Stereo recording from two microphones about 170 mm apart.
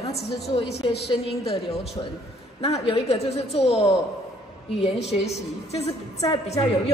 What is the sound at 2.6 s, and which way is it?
A woman's voice, 35° left (ahead or behind).